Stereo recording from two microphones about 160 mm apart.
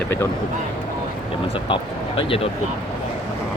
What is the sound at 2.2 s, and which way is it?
Speech, 35° left (ahead or behind).